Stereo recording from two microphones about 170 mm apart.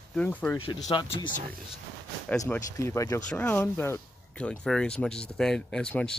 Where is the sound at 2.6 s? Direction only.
15° left (ahead or behind).